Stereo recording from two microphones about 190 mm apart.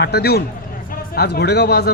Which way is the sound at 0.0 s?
60° left (ahead or behind).